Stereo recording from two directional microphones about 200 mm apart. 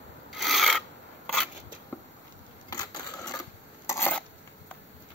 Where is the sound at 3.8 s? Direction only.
10° left (ahead or behind).